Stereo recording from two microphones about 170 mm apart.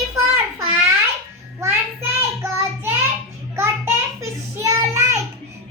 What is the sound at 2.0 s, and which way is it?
Child singing, 15° right (ahead or behind).